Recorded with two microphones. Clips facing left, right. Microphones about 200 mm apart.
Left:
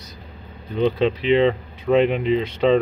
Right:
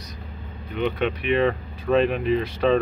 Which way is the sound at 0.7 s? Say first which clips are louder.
Left 5 dB; 25° left (ahead or behind).